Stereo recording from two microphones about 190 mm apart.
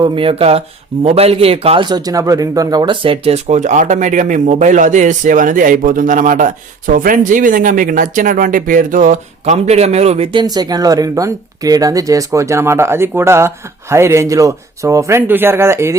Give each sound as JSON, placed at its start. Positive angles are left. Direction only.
{"t": 0.0, "sound": "a man's voice", "side_deg": -30}
{"t": 10.4, "sound": "speech", "side_deg": -20}